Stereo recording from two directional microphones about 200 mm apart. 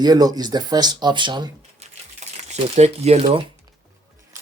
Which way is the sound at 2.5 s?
35° right (ahead or behind).